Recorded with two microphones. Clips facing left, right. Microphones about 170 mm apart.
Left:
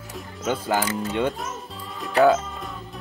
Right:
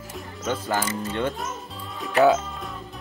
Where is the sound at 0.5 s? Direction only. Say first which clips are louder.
Left 2 dB; 15° left (ahead or behind).